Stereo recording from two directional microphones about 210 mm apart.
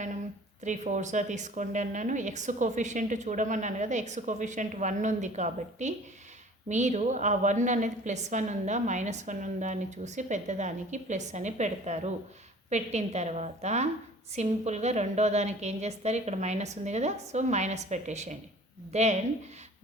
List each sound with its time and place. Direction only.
0.6 s a woman's voice: 35° right (ahead or behind)